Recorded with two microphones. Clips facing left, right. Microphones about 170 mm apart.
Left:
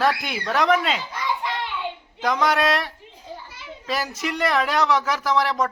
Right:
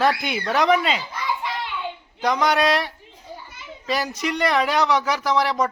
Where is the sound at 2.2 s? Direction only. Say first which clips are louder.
Right 1 dB; centre (ahead or behind).